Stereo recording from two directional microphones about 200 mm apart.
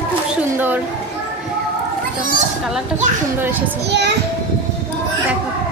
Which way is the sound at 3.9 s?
55° right (ahead or behind).